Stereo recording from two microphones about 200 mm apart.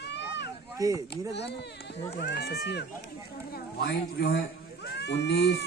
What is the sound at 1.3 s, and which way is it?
A man's voice, 60° left (ahead or behind).